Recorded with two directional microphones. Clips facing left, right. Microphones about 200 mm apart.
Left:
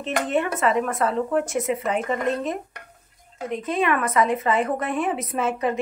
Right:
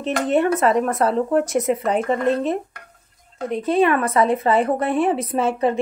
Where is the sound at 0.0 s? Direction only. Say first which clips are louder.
Right 5 dB; 40° right (ahead or behind).